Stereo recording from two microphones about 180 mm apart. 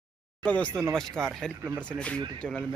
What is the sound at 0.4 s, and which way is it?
Speech, 5° left (ahead or behind).